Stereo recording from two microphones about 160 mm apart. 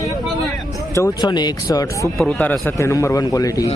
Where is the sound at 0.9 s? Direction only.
20° left (ahead or behind).